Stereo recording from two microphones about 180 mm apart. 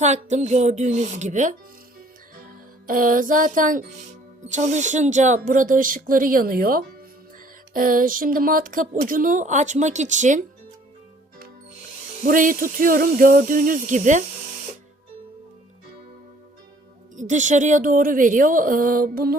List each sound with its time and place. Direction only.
0.0 s speech: 40° right (ahead or behind)
2.8 s speech: 50° right (ahead or behind)
12.2 s speech: 50° right (ahead or behind)
17.2 s speech: 45° right (ahead or behind)